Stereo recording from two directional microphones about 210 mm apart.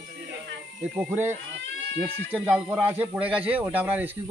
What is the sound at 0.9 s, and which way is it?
Speech, 10° right (ahead or behind).